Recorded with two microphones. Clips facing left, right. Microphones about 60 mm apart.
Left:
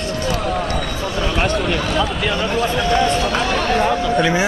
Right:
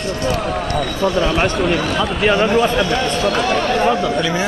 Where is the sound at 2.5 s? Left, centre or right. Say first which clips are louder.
Right 4 dB; right.